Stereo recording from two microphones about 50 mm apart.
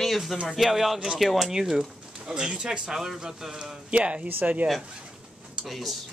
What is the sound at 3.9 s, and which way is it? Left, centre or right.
Speech, right.